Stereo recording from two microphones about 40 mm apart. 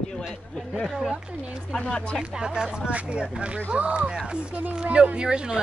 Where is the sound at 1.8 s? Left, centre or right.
Centre.